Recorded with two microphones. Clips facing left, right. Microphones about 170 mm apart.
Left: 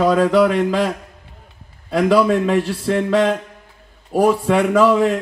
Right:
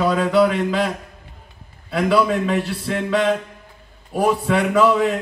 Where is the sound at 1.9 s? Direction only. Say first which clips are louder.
Left 3 dB; 40° left (ahead or behind).